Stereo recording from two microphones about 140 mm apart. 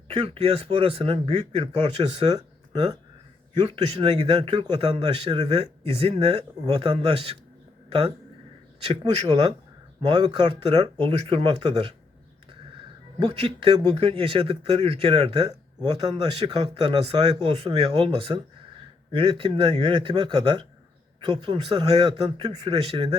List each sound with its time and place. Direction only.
0.1 s speech: 40° right (ahead or behind)
3.8 s speech: 45° right (ahead or behind)
11.1 s speech: 50° right (ahead or behind)
13.1 s speech: 40° right (ahead or behind)
16.5 s speech: 35° right (ahead or behind)